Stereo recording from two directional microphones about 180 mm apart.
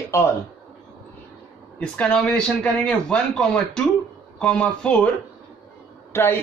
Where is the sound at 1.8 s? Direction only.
5° left (ahead or behind).